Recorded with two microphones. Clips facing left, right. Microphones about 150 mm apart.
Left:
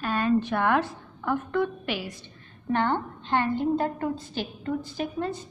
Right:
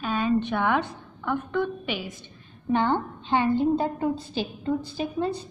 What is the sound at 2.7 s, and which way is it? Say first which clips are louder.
A woman's voice: right 2 dB; 15° right (ahead or behind).